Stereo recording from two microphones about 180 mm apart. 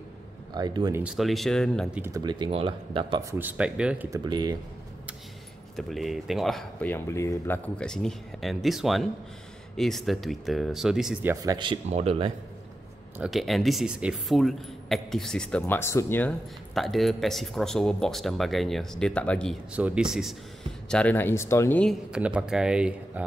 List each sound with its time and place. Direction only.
0.6 s speech: 20° right (ahead or behind)
1.0 s speech: centre (ahead or behind)
2.0 s speech: 20° right (ahead or behind)
3.3 s speech: 10° right (ahead or behind)
4.1 s speech: 25° right (ahead or behind)
5.8 s speech: centre (ahead or behind)
11.4 s speech: 25° right (ahead or behind)
13.2 s speech: centre (ahead or behind)
19.7 s speech: 5° right (ahead or behind)
22.1 s speech: 5° right (ahead or behind)